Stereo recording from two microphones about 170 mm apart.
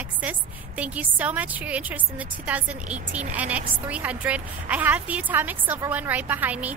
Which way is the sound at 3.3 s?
10° right (ahead or behind).